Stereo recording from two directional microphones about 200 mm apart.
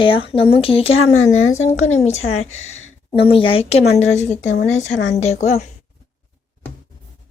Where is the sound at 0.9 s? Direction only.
90° left.